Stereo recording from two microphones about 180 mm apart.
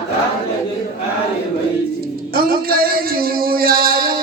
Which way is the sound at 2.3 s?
55° right (ahead or behind).